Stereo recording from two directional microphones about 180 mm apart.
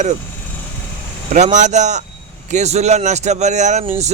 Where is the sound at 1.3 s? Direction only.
40° right (ahead or behind).